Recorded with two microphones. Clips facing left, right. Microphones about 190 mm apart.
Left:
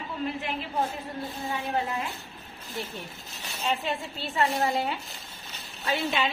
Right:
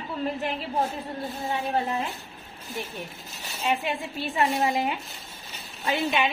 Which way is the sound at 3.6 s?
15° right (ahead or behind).